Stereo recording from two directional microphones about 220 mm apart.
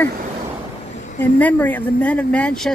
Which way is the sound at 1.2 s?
5° left (ahead or behind).